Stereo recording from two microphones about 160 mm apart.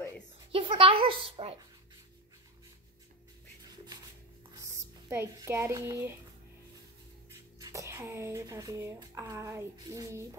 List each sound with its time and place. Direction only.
0.5 s speech: 35° right (ahead or behind)
4.6 s speech: 15° right (ahead or behind)
7.6 s speech: 20° right (ahead or behind)